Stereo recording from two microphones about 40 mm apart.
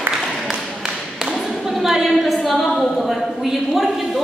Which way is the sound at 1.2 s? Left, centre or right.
Centre.